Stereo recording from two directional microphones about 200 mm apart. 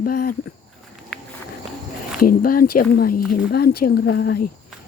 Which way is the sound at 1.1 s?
Centre (ahead or behind).